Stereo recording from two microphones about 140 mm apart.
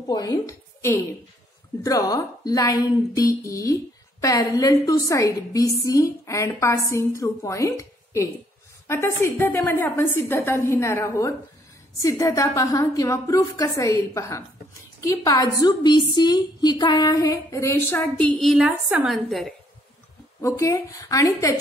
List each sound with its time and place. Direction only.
0.0 s a woman's voice: 25° left (ahead or behind)
18.4 s a woman's voice: centre (ahead or behind)
20.4 s a woman's voice: 20° left (ahead or behind)